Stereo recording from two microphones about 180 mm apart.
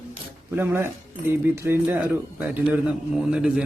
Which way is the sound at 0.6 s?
10° right (ahead or behind).